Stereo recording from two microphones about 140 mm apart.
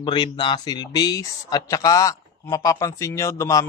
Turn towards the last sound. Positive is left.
turn(degrees=20)  # may be behind; listen again after turning